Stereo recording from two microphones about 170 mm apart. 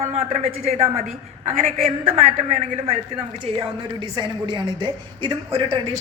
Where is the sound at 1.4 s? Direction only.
50° right (ahead or behind).